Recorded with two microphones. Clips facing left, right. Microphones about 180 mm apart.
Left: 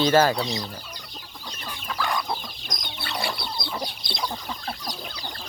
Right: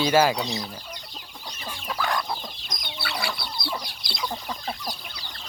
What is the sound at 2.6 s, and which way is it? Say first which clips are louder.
Chicken: even; 20° left (ahead or behind).